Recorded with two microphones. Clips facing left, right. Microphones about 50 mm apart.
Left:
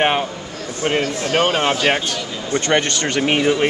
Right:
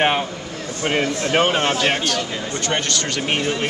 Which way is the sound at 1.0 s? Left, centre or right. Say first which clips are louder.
Even; right.